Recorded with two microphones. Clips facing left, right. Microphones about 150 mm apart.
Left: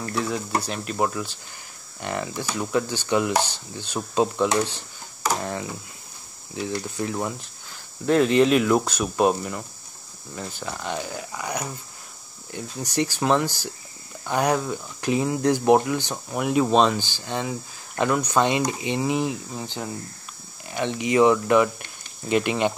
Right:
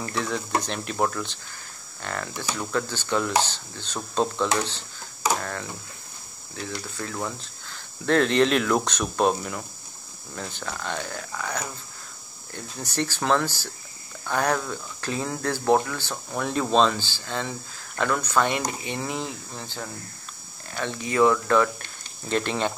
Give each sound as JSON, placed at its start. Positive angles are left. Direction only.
{"t": 0.1, "sound": "speech", "side_deg": 5}